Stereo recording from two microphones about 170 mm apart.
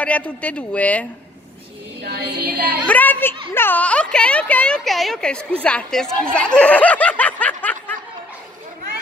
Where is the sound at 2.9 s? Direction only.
10° left (ahead or behind).